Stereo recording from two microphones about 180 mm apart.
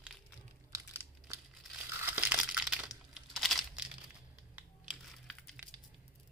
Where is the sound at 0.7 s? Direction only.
15° right (ahead or behind).